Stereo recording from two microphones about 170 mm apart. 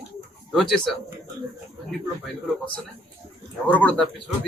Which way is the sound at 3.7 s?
10° left (ahead or behind).